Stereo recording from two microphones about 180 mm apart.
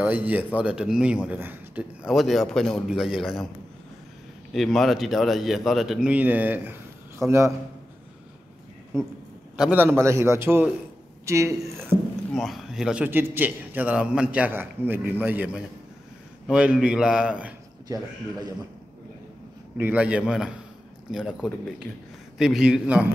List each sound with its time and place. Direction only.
0.0 s a man's voice: 10° right (ahead or behind)
4.6 s a man's voice: centre (ahead or behind); by 7.5 s 15° right (ahead or behind)
8.9 s a man's voice: 15° right (ahead or behind)
12.4 s a man's voice: centre (ahead or behind)
19.8 s a man's voice: 10° right (ahead or behind)